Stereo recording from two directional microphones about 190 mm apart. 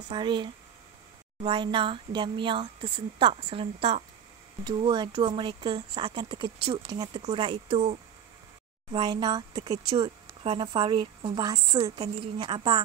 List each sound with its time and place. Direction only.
0.1 s a woman's voice: 25° right (ahead or behind)
9.8 s a woman's voice: 30° right (ahead or behind)